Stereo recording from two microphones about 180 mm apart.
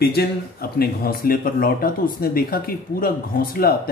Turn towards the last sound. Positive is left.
turn(degrees=55)  # may be behind; listen again after turning